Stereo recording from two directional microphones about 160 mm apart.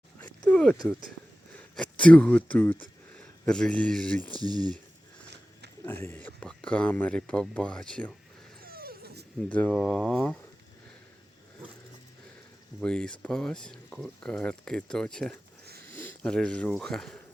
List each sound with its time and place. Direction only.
0.2 s a sound: 10° left (ahead or behind)
1.5 s a man's voice: 10° left (ahead or behind)
4.2 s speech: 25° right (ahead or behind)
5.8 s speech: 15° left (ahead or behind)
8.6 s dog: 70° right (ahead or behind)
9.5 s speech: 10° left (ahead or behind)
12.8 s speech: 5° left (ahead or behind)